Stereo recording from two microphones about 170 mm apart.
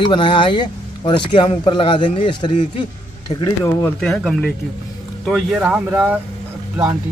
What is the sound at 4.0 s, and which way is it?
Speech, 5° left (ahead or behind).